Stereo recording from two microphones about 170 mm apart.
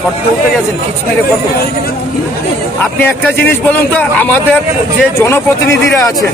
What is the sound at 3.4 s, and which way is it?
Speech, 10° left (ahead or behind).